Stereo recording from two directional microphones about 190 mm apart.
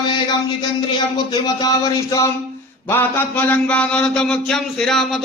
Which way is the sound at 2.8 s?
10° left (ahead or behind).